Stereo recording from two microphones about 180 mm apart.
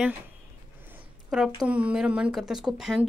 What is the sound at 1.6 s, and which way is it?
A woman's voice, 5° right (ahead or behind).